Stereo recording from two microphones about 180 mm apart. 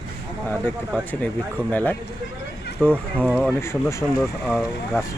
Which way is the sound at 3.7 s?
15° left (ahead or behind).